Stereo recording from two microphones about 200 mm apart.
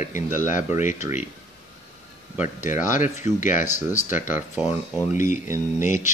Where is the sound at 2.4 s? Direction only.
40° left (ahead or behind).